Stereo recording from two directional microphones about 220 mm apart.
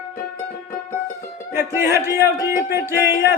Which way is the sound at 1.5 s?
10° right (ahead or behind).